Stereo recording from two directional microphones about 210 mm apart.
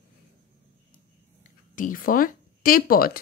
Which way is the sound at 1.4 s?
40° left (ahead or behind).